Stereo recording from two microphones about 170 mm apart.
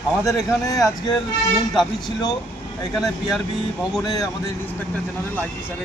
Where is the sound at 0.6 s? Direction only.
20° left (ahead or behind).